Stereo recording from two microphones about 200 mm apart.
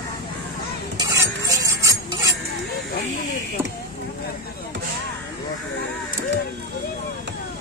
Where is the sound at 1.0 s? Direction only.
15° right (ahead or behind).